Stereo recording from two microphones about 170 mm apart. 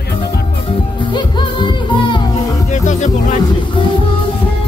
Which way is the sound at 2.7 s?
45° left (ahead or behind).